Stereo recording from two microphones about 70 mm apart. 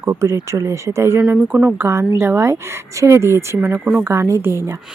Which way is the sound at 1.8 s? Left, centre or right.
Right.